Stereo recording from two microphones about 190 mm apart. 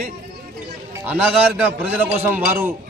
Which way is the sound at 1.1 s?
10° right (ahead or behind).